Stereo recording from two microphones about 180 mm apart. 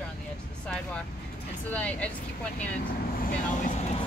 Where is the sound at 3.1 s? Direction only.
50° left (ahead or behind).